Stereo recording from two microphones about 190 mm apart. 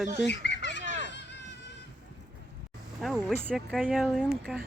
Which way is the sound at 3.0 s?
Centre (ahead or behind).